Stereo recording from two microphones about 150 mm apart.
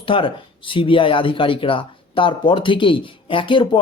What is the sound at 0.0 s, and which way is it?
Speech, 35° left (ahead or behind).